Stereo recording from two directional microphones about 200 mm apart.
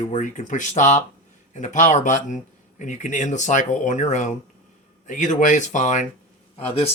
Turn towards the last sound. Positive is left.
turn(degrees=30)  # may be behind; listen again after turning